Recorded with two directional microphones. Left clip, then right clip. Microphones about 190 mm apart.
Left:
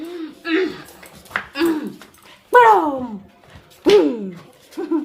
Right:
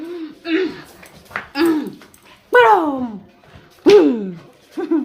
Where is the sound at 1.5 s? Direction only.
35° right (ahead or behind).